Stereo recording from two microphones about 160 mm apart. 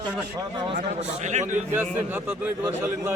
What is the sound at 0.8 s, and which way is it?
Speech, 50° right (ahead or behind).